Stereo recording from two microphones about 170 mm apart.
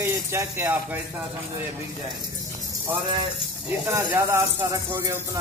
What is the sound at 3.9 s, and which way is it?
Speech, 15° right (ahead or behind).